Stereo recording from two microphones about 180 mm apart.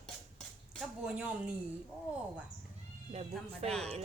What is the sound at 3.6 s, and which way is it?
Speech, 35° right (ahead or behind).